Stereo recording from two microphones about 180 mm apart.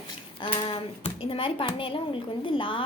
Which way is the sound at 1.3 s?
30° left (ahead or behind).